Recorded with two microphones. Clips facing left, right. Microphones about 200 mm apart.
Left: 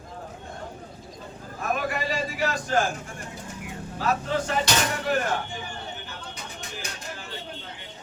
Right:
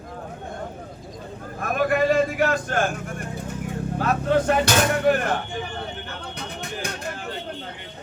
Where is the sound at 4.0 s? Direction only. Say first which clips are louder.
Right 5 dB; 55° right (ahead or behind).